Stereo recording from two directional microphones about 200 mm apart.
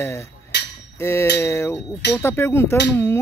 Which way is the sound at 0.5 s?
60° left (ahead or behind).